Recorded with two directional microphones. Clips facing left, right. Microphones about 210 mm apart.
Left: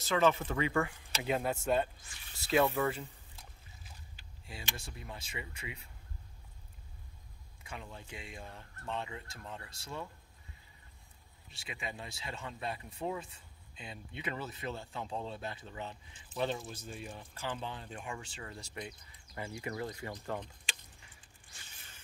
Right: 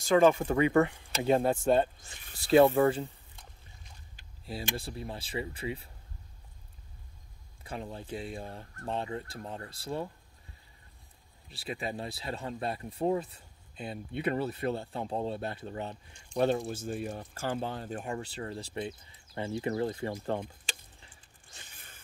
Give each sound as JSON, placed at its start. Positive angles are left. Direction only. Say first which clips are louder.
{"t": 0.1, "sound": "speech", "louder": "right 6 dB", "side_deg": -45}
{"t": 0.8, "sound": "speech", "louder": "right 8 dB", "side_deg": -20}
{"t": 1.2, "sound": "speech", "louder": "right 8 dB", "side_deg": -35}
{"t": 4.5, "sound": "speech", "louder": "right 9 dB", "side_deg": -35}
{"t": 7.6, "sound": "speech", "louder": "right 8 dB", "side_deg": -35}
{"t": 11.5, "sound": "speech", "louder": "right 8 dB", "side_deg": -35}
{"t": 13.8, "sound": "speech", "louder": "right 9 dB", "side_deg": -55}
{"t": 14.9, "sound": "speech", "louder": "right 7 dB", "side_deg": -40}
{"t": 15.4, "sound": "speech", "louder": "right 6 dB", "side_deg": -50}
{"t": 16.1, "sound": "speech", "louder": "right 2 dB", "side_deg": 5}
{"t": 16.6, "sound": "speech", "louder": "right 10 dB", "side_deg": -45}
{"t": 20.3, "sound": "a sound", "louder": "right 5 dB", "side_deg": -40}
{"t": 21.7, "sound": "a sound", "louder": "right 3 dB", "side_deg": -55}